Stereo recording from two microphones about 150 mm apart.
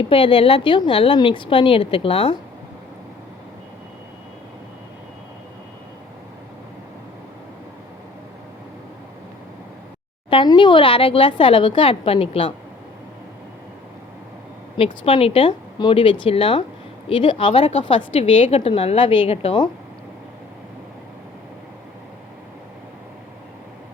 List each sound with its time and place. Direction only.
0.1 s a woman's voice: 35° left (ahead or behind)
10.2 s a woman's voice: 30° left (ahead or behind)
15.0 s a woman's voice: 40° left (ahead or behind)